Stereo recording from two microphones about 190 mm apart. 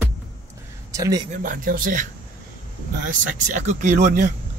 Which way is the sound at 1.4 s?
45° right (ahead or behind).